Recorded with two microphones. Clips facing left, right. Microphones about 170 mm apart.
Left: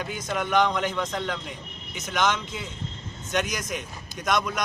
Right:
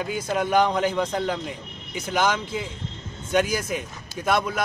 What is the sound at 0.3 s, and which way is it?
A man's voice, 35° right (ahead or behind).